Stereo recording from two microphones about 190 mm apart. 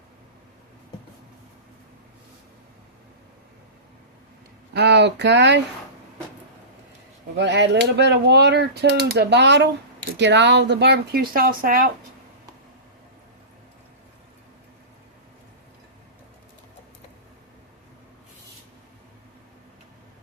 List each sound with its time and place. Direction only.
4.7 s speech: 60° right (ahead or behind)
7.3 s speech: 65° right (ahead or behind)